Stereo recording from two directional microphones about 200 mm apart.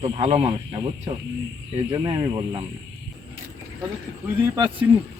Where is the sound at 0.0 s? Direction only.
30° right (ahead or behind).